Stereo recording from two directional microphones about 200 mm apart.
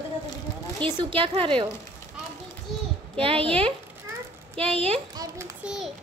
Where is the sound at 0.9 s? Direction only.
25° right (ahead or behind).